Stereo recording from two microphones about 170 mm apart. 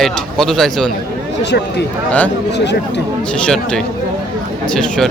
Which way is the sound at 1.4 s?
90° left.